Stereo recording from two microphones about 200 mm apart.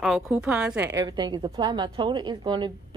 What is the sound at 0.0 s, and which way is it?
A woman's voice, centre (ahead or behind).